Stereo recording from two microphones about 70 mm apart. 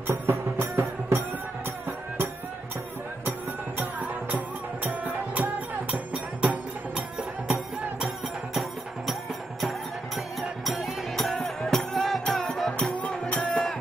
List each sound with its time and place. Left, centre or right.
0.0 s music: right
3.3 s music: right
9.6 s music: centre
13.5 s music: centre